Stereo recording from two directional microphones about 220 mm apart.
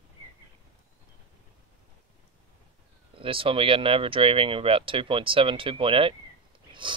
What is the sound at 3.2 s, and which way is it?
Speech, 25° right (ahead or behind).